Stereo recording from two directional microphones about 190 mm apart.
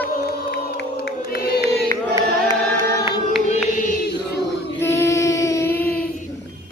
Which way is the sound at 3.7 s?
45° left (ahead or behind).